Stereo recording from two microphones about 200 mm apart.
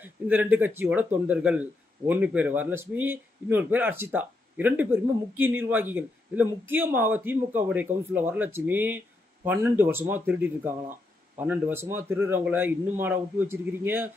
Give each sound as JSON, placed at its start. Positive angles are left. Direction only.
{"t": 0.0, "sound": "speech", "side_deg": -10}